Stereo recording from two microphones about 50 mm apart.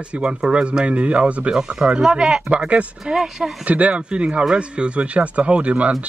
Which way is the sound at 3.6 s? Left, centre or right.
Right.